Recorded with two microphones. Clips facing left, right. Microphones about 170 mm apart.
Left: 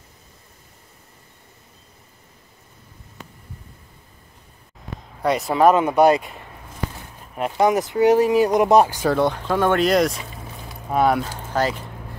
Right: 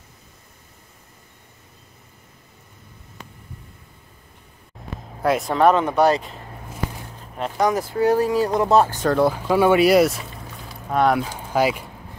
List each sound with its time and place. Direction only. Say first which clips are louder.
5.2 s speech: left 1 dB; centre (ahead or behind)
7.5 s speech: left 2 dB; 20° left (ahead or behind)
9.1 s speech: right 2 dB; 5° right (ahead or behind)
11.2 s speech: right 2 dB; 10° right (ahead or behind)